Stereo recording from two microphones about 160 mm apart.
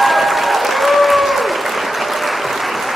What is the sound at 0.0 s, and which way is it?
Applause, centre (ahead or behind).